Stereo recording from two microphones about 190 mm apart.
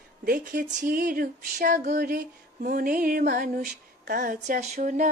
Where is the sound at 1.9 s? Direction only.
50° right (ahead or behind).